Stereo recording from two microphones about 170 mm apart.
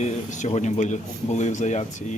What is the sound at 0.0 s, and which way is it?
Speech, 40° left (ahead or behind).